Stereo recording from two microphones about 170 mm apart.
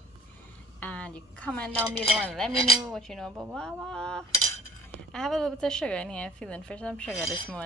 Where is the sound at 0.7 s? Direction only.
10° left (ahead or behind).